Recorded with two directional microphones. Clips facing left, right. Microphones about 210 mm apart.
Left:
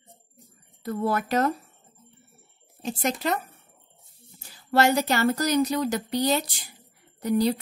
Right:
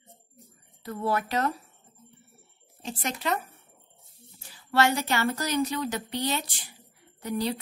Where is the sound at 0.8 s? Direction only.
45° left (ahead or behind).